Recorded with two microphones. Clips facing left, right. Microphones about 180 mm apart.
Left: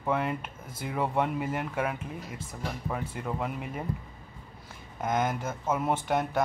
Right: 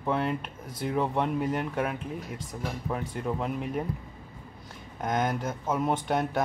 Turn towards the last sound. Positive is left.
turn(degrees=0)  # may be behind; listen again after turning